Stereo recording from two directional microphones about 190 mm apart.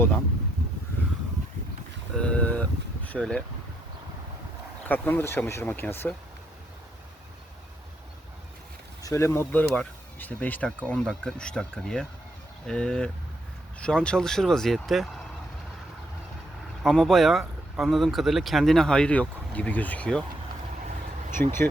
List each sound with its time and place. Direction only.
2.1 s a sound: 5° left (ahead or behind)
4.9 s speech: 10° left (ahead or behind)
9.0 s speech: 15° left (ahead or behind)
16.8 s speech: centre (ahead or behind)
21.4 s speech: 10° left (ahead or behind)